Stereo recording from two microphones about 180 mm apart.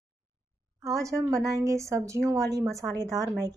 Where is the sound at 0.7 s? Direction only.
15° right (ahead or behind).